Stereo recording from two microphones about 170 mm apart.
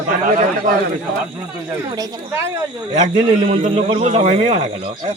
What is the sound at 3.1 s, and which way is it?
Speech, 35° right (ahead or behind).